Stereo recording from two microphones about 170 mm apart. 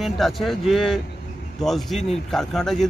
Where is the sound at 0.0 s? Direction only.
Centre (ahead or behind).